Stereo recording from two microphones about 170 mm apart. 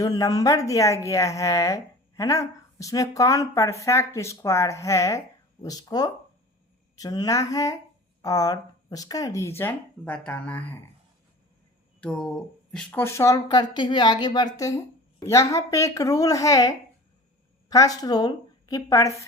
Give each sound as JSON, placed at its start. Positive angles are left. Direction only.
{"t": 0.0, "sound": "a woman's voice", "side_deg": 20}
{"t": 11.9, "sound": "a woman's voice", "side_deg": 5}